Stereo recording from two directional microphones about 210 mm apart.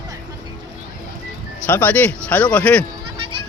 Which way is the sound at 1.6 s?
10° left (ahead or behind).